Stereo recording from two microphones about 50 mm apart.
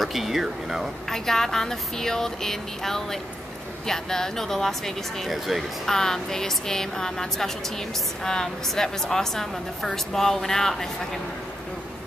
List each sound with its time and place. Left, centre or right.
0.0 s speech: centre
1.1 s a woman's voice: centre
5.9 s a woman's voice: centre